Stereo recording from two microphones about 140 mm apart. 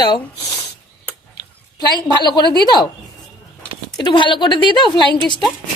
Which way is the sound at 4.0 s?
35° left (ahead or behind).